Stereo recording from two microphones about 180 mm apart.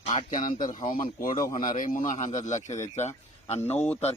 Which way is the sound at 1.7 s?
50° left (ahead or behind).